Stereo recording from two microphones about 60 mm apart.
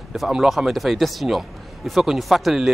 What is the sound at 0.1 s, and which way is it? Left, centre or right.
Speech, centre.